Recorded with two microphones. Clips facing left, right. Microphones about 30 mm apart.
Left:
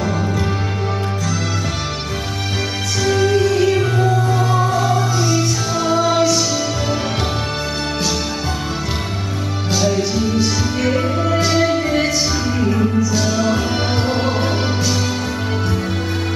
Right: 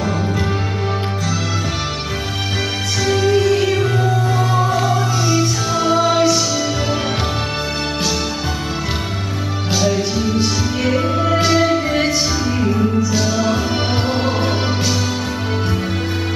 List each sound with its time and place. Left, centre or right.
3.0 s music: centre
9.7 s music: centre